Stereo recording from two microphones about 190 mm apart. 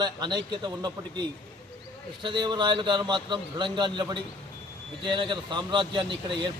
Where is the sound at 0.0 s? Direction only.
25° right (ahead or behind).